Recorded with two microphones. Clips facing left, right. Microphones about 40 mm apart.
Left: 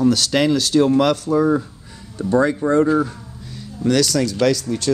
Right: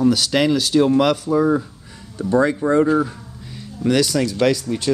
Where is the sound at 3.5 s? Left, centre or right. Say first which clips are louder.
Even; centre.